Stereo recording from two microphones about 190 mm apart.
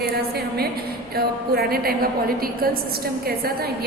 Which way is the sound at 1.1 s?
55° right (ahead or behind).